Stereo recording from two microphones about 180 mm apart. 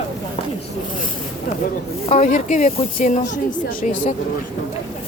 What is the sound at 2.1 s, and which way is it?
Speech, 40° left (ahead or behind).